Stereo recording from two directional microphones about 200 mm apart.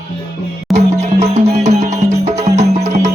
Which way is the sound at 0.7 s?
35° right (ahead or behind).